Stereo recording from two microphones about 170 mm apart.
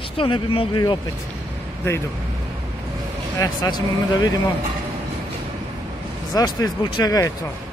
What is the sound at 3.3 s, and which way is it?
Speech, 20° left (ahead or behind).